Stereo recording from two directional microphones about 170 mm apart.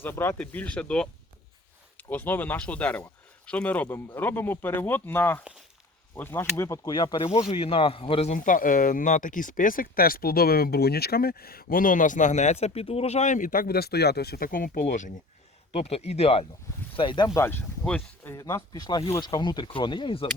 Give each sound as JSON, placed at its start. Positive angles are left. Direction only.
{"t": 0.0, "sound": "a man's voice", "side_deg": 15}
{"t": 8.4, "sound": "a man's voice", "side_deg": 50}
{"t": 17.4, "sound": "speech", "side_deg": 10}